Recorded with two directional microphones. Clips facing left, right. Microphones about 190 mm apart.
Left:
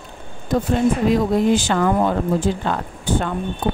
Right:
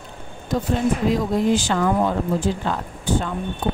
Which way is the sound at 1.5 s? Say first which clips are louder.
Left 2 dB; 60° left (ahead or behind).